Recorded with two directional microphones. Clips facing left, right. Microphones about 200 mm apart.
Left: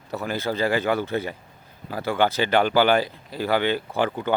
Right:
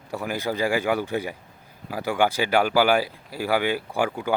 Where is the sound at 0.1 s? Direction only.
15° right (ahead or behind).